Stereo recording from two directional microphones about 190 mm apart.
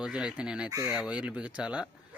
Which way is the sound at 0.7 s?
15° right (ahead or behind).